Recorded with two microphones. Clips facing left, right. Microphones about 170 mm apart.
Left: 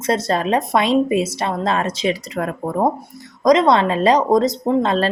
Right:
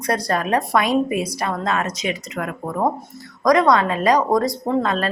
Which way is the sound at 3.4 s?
20° left (ahead or behind).